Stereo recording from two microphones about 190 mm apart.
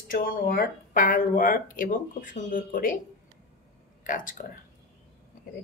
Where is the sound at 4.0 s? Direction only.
45° left (ahead or behind).